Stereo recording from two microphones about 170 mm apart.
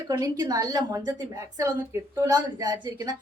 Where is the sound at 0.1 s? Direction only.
20° right (ahead or behind).